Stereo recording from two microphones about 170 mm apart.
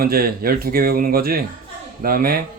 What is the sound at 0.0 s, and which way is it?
Speech, 60° right (ahead or behind).